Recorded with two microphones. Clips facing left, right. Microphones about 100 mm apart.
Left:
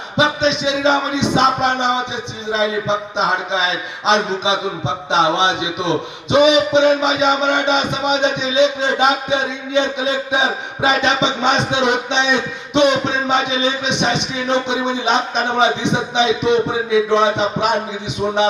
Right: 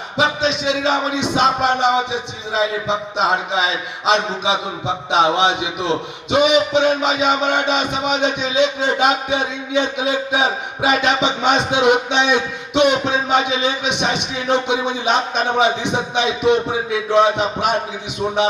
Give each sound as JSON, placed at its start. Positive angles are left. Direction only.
{"t": 0.2, "sound": "music", "side_deg": 0}